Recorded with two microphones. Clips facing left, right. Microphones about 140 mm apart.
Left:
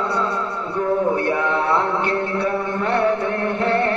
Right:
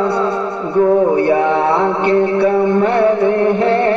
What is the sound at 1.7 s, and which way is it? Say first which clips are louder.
Mantra: right 6 dB; 20° right (ahead or behind).